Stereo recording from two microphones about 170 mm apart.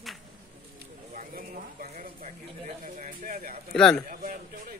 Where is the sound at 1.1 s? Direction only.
50° right (ahead or behind).